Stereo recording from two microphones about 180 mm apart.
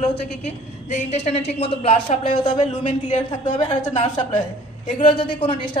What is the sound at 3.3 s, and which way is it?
Speech, 25° left (ahead or behind).